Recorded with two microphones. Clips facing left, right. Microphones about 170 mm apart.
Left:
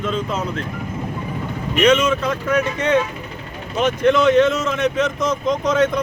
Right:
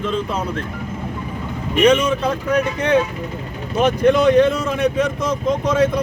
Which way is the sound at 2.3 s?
30° right (ahead or behind).